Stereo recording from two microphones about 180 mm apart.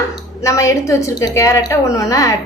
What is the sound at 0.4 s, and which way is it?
A woman's voice, 15° left (ahead or behind).